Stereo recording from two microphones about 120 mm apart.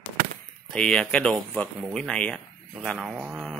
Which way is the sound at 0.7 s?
5° left (ahead or behind).